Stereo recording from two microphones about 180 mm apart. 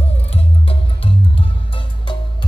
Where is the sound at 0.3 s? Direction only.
35° left (ahead or behind).